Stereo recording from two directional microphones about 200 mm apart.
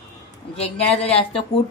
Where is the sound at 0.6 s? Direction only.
30° left (ahead or behind).